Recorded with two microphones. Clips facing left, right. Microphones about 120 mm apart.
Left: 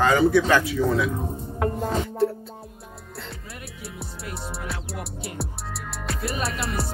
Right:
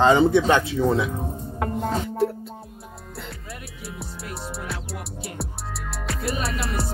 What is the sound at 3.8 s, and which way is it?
Music, centre (ahead or behind).